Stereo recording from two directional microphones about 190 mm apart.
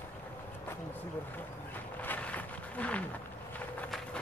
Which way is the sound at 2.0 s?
10° left (ahead or behind).